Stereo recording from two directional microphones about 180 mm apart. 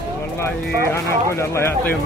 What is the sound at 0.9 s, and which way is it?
Speech, 15° left (ahead or behind).